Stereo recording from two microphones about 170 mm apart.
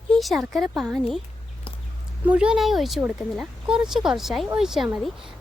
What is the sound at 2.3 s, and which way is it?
Speech, 5° right (ahead or behind).